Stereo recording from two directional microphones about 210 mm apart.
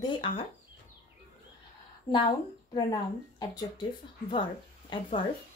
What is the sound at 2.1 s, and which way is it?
A woman's voice, 20° left (ahead or behind).